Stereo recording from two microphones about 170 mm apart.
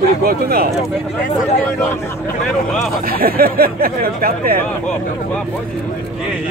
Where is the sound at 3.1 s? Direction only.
60° right (ahead or behind).